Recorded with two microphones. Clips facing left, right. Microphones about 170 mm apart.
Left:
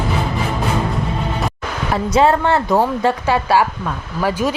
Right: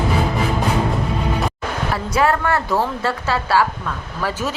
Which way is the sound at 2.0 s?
20° left (ahead or behind).